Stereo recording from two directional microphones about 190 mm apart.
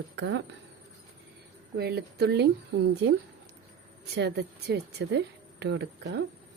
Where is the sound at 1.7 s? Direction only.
55° right (ahead or behind).